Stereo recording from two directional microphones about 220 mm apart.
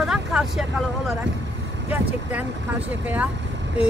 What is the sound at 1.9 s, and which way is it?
Speech, 5° right (ahead or behind).